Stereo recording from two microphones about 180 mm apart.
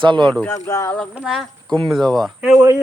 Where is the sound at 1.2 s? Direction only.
Centre (ahead or behind).